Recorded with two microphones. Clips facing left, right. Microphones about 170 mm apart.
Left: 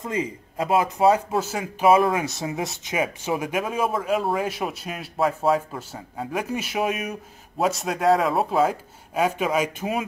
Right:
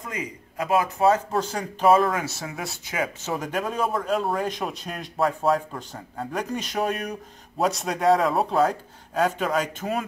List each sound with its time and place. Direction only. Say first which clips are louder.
0.0 s a man's voice: left 6 dB; 25° left (ahead or behind)
1.3 s speech: left 1 dB; 5° left (ahead or behind)
2.1 s a man's voice: left 4 dB; 20° left (ahead or behind)
3.3 s speech: left 1 dB; 10° left (ahead or behind)